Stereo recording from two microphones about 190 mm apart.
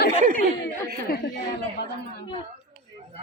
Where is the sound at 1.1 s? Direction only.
50° left (ahead or behind).